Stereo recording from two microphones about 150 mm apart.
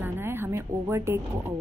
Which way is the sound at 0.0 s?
15° right (ahead or behind).